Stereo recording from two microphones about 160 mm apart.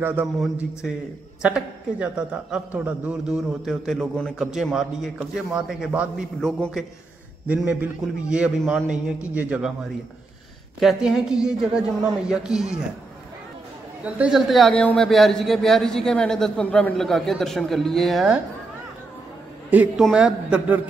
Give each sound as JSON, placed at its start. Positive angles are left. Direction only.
{"t": 0.0, "sound": "a man's voice", "side_deg": -15}
{"t": 10.8, "sound": "a man's voice", "side_deg": 0}
{"t": 14.0, "sound": "a man's voice", "side_deg": -5}
{"t": 19.7, "sound": "a man's voice", "side_deg": -5}